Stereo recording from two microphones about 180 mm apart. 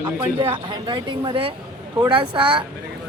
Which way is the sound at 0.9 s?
25° right (ahead or behind).